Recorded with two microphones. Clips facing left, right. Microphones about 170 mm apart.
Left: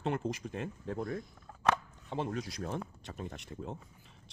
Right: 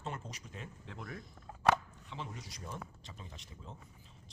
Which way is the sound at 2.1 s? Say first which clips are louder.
Left 10 dB; 55° left (ahead or behind).